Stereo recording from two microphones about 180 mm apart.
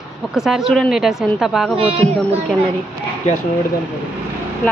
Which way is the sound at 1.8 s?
35° right (ahead or behind).